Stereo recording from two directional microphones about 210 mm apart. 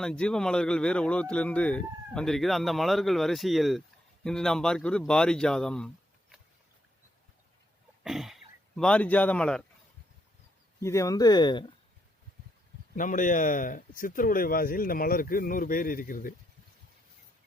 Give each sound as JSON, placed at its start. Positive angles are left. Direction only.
{"t": 0.0, "sound": "speech", "side_deg": 5}
{"t": 8.0, "sound": "speech", "side_deg": 0}
{"t": 10.8, "sound": "speech", "side_deg": 15}
{"t": 13.0, "sound": "speech", "side_deg": 40}